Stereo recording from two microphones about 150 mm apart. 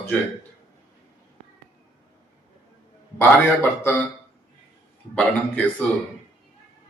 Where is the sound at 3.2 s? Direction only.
15° left (ahead or behind).